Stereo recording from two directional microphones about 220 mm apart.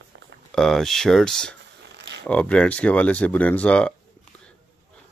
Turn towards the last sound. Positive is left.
turn(degrees=5)  # may be behind; listen again after turning